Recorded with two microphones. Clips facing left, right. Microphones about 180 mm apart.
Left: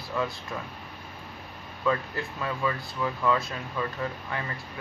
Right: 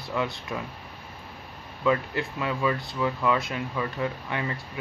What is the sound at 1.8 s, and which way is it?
Speech, 20° right (ahead or behind).